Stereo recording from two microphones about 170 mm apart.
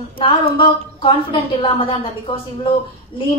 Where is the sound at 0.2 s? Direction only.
30° left (ahead or behind).